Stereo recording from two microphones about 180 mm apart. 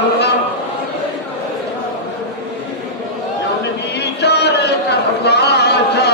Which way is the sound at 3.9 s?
65° left (ahead or behind).